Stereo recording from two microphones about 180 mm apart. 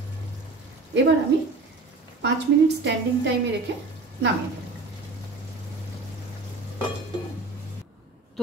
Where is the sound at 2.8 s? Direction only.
75° right (ahead or behind).